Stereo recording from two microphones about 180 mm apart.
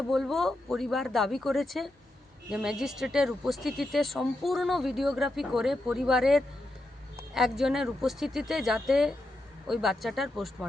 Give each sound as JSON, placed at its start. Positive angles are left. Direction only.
{"t": 0.1, "sound": "speech", "side_deg": 0}